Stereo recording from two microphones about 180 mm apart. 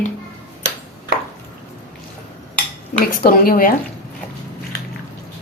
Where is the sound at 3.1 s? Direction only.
50° left (ahead or behind).